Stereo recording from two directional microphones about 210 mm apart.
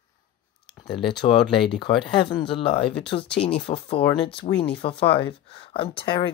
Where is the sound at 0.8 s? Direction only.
25° left (ahead or behind).